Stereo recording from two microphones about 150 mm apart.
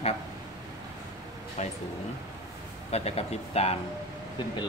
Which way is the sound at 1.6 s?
50° left (ahead or behind).